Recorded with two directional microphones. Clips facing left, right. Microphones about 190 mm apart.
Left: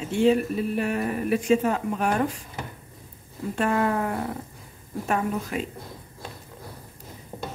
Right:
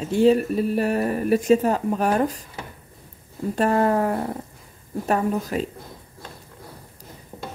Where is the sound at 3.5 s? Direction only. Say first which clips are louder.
Right 4 dB; 40° right (ahead or behind).